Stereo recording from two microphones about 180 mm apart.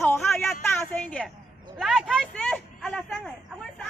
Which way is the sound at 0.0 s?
15° left (ahead or behind).